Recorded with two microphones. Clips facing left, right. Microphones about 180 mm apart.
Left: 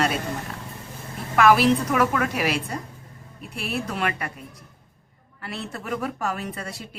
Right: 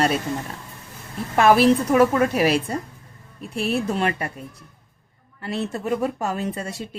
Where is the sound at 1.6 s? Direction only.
30° right (ahead or behind).